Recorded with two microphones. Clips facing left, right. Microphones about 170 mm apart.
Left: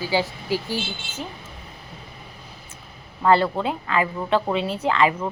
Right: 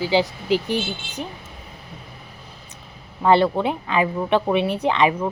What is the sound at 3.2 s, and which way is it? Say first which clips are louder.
A woman's voice: right 2 dB; 15° right (ahead or behind).